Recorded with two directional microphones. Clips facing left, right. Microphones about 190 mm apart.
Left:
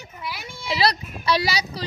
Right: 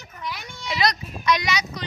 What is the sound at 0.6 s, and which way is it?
Speech, 30° left (ahead or behind).